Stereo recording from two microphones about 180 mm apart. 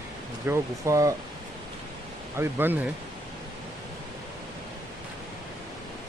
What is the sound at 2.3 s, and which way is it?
Speech, 10° right (ahead or behind).